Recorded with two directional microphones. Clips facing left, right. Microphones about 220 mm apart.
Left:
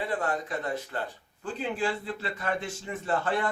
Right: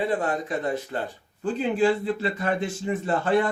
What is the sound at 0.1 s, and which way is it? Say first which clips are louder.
A man's voice: right 5 dB; 20° right (ahead or behind).